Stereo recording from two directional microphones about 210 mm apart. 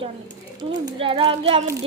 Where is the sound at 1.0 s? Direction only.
25° right (ahead or behind).